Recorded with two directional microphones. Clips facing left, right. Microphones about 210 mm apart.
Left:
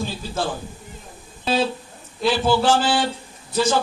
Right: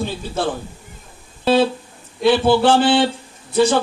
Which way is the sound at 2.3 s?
60° right (ahead or behind).